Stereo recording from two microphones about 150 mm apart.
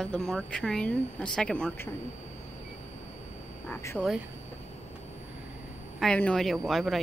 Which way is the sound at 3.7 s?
20° left (ahead or behind).